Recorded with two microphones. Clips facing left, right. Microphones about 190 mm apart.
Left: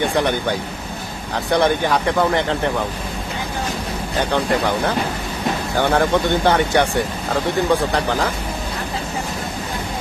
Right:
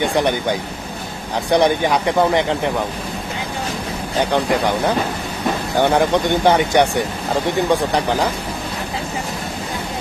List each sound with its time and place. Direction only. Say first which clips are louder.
1.5 s speech: right 2 dB; 15° right (ahead or behind)
4.2 s speech: right 2 dB; 15° right (ahead or behind)
5.7 s speech: right 2 dB; 15° right (ahead or behind)
7.9 s speech: right 2 dB; 15° right (ahead or behind)